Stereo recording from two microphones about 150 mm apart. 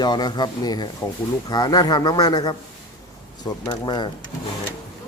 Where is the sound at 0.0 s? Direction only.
30° left (ahead or behind).